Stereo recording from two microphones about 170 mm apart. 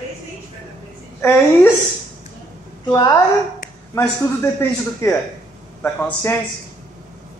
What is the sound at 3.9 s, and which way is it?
A man's voice, 15° left (ahead or behind).